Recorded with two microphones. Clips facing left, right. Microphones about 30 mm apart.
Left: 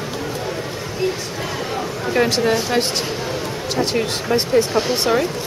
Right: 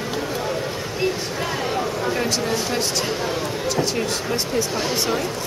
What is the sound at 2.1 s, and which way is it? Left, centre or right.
Speech, left.